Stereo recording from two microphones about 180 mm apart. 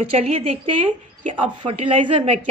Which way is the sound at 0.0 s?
35° right (ahead or behind).